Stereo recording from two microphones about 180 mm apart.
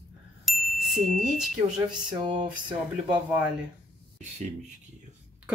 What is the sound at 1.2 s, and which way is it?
Speech, 5° right (ahead or behind).